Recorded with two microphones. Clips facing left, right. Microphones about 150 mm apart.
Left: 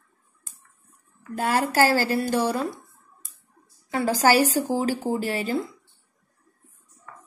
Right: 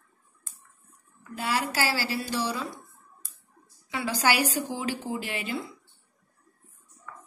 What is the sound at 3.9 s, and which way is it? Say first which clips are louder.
A woman's voice: left 7 dB; 45° left (ahead or behind).